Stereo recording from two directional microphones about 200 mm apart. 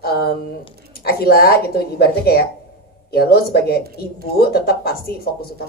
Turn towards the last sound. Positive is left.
turn(degrees=50)  # may be behind; listen again after turning